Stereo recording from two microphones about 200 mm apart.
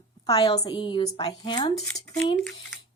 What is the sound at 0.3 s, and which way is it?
A woman's voice, 20° left (ahead or behind).